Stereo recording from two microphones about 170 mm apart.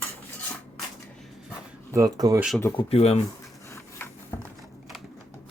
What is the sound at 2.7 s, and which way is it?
Speech, 35° left (ahead or behind).